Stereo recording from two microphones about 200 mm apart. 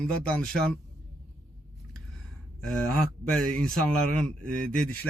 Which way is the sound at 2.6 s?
5° left (ahead or behind).